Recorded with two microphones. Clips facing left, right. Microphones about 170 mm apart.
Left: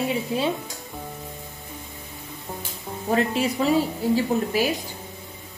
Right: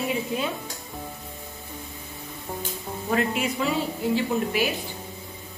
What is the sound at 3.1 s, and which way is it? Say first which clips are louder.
Speech: left 3 dB; 35° left (ahead or behind).